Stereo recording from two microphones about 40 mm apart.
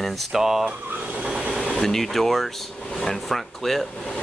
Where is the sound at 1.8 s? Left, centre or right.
Centre.